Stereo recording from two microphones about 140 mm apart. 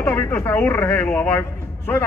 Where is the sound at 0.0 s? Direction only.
20° left (ahead or behind).